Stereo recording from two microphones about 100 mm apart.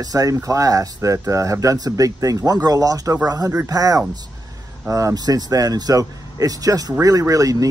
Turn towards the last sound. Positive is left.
turn(degrees=-35)  # may be behind; listen again after turning